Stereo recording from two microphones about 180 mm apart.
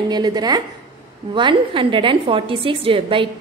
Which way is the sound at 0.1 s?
25° right (ahead or behind).